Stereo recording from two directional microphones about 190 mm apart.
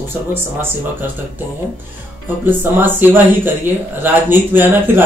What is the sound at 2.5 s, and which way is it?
Speech, 10° right (ahead or behind).